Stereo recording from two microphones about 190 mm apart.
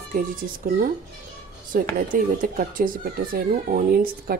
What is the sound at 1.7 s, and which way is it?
Speech, 50° right (ahead or behind).